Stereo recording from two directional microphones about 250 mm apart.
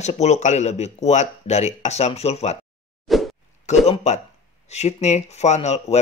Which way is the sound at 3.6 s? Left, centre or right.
Left.